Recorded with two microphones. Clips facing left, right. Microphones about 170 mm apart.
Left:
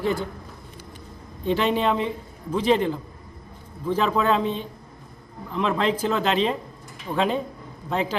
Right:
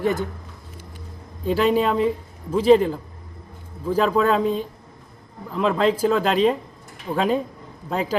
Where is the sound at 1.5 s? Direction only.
40° right (ahead or behind).